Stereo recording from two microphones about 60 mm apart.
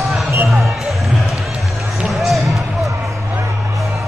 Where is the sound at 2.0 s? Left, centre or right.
Centre.